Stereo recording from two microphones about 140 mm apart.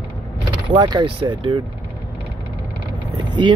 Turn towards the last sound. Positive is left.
turn(degrees=-35)  # may be behind; listen again after turning